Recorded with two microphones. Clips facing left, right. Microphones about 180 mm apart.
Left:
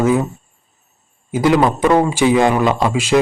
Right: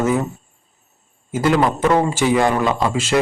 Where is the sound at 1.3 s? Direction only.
15° left (ahead or behind).